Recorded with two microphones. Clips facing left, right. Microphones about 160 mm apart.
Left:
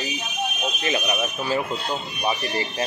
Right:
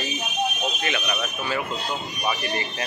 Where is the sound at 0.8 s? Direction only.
30° left (ahead or behind).